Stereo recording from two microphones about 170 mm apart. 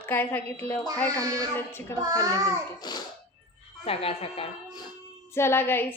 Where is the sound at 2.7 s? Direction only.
25° left (ahead or behind).